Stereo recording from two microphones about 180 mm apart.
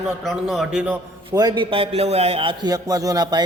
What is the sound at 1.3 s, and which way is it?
A man's voice, 25° right (ahead or behind).